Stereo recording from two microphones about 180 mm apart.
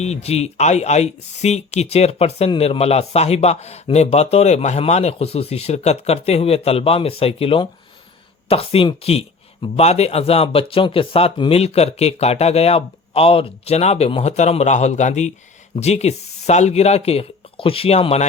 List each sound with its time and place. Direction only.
0.0 s speech: 35° left (ahead or behind)